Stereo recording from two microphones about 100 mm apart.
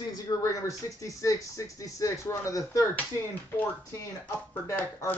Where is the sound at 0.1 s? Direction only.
35° left (ahead or behind).